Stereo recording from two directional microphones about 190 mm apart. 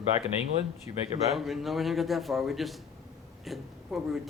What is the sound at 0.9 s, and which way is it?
Speech, 20° right (ahead or behind).